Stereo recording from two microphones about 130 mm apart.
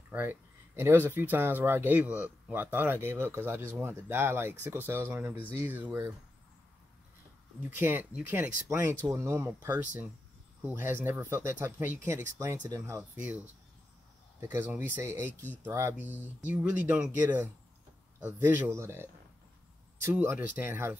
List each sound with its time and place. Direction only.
0.1 s speech: 15° right (ahead or behind)
7.6 s speech: 15° right (ahead or behind)
14.4 s speech: 15° right (ahead or behind)